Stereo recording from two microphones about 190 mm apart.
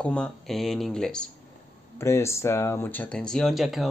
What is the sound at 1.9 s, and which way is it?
Speech, 15° left (ahead or behind).